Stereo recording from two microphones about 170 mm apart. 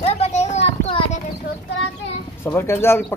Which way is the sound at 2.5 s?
15° left (ahead or behind).